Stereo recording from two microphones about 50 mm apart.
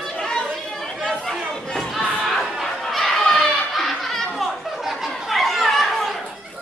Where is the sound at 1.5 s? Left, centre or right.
Centre.